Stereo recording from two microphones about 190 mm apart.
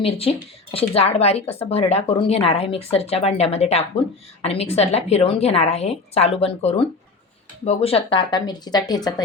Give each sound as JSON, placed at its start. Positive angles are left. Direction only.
{"t": 0.0, "sound": "a woman's voice", "side_deg": 30}